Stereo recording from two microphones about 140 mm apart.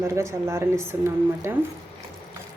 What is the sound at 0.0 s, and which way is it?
Speech, 20° right (ahead or behind).